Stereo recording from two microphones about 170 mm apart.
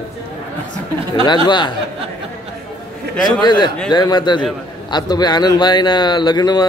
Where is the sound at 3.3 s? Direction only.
25° left (ahead or behind).